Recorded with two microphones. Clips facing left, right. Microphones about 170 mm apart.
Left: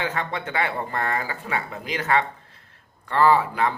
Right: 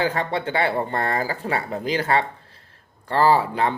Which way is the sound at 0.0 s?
30° right (ahead or behind).